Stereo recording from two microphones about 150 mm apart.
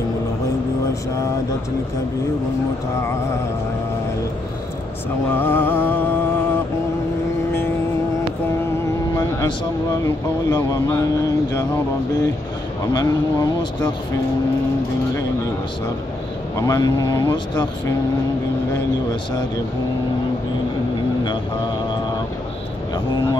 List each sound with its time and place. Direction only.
5.3 s music: 15° left (ahead or behind)
9.1 s speech: 20° left (ahead or behind)
12.9 s speech: 25° left (ahead or behind)
16.5 s speech: 25° left (ahead or behind)